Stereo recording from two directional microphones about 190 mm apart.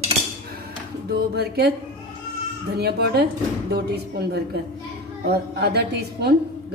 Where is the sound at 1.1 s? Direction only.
55° right (ahead or behind).